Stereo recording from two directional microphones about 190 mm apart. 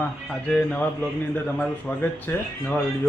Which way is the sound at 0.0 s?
5° left (ahead or behind).